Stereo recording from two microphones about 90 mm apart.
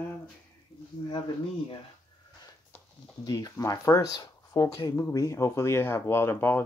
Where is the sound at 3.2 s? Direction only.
45° left (ahead or behind); by 6.6 s 25° left (ahead or behind).